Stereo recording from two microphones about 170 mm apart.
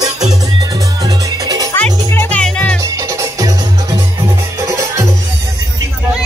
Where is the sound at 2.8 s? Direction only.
20° right (ahead or behind).